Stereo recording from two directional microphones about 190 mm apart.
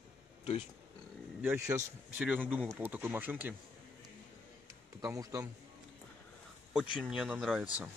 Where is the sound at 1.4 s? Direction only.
15° right (ahead or behind).